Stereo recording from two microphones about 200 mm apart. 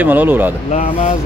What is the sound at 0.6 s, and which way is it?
Speech, 35° left (ahead or behind).